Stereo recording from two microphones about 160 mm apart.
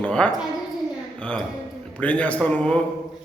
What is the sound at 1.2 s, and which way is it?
A man's voice, 5° left (ahead or behind).